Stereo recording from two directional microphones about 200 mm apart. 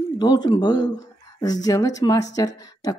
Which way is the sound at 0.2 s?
20° left (ahead or behind).